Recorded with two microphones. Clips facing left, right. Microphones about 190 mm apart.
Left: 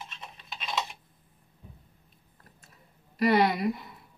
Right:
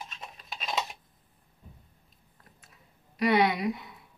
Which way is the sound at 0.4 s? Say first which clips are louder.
Right 2 dB; 40° right (ahead or behind).